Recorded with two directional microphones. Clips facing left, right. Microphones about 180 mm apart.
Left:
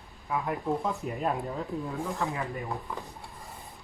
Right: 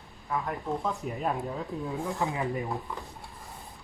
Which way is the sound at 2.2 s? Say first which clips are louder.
Right 2 dB; 15° right (ahead or behind).